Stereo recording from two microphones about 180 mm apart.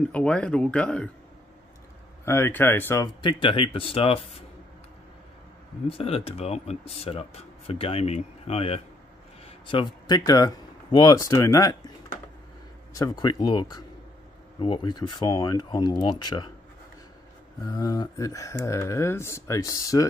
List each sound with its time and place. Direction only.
0.1 s speech: 5° left (ahead or behind)
2.2 s speech: 15° left (ahead or behind)
3.2 s speech: 25° left (ahead or behind)
5.9 s speech: 35° left (ahead or behind)
12.9 s speech: 20° left (ahead or behind)
17.6 s speech: 20° left (ahead or behind)